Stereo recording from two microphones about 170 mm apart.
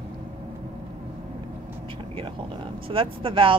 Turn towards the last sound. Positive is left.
turn(degrees=-30)  # may be behind; listen again after turning